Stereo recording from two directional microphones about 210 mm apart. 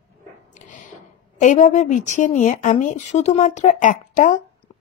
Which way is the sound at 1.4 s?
35° left (ahead or behind).